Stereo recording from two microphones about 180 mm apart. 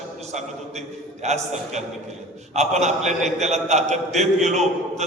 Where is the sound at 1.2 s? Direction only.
40° right (ahead or behind).